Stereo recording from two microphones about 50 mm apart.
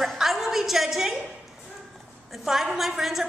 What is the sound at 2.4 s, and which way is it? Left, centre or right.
Speech, centre.